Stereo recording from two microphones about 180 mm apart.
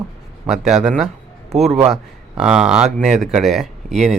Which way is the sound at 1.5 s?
35° right (ahead or behind).